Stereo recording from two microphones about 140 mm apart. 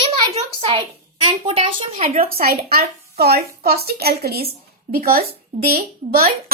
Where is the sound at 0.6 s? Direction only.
40° right (ahead or behind).